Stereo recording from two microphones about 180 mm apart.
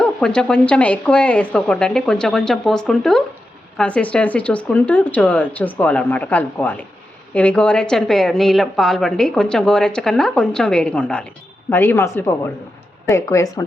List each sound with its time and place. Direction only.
0.0 s a woman's voice: 5° left (ahead or behind)